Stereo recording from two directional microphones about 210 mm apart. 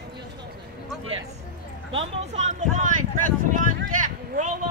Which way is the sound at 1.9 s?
25° right (ahead or behind).